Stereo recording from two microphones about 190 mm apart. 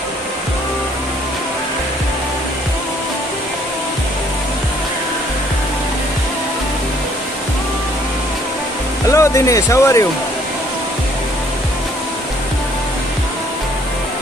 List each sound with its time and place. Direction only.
9.1 s speech: 15° left (ahead or behind)